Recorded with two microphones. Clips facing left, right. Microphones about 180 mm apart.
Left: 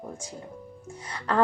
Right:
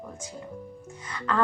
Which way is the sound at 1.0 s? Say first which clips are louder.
Left 1 dB; 35° left (ahead or behind).